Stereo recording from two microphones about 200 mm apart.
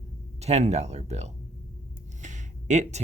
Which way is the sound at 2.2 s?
35° right (ahead or behind).